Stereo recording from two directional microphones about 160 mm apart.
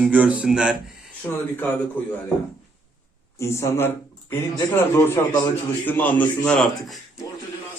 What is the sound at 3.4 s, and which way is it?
Speech, 15° left (ahead or behind).